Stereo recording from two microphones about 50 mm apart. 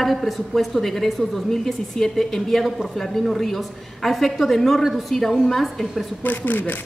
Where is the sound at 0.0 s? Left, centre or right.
Centre.